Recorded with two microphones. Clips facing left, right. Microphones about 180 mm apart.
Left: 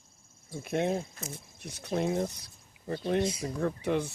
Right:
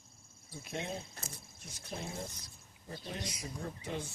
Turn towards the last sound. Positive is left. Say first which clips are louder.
# left 11 dB
turn(degrees=70)  # may be behind; listen again after turning